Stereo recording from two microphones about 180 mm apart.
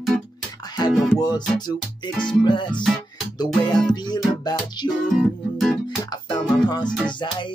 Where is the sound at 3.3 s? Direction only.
20° left (ahead or behind).